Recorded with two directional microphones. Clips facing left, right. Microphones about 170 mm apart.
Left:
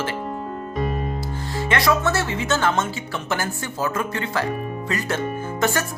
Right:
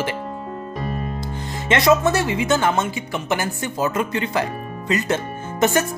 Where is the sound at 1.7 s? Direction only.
20° right (ahead or behind).